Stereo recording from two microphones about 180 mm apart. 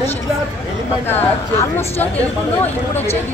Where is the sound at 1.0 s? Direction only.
15° left (ahead or behind).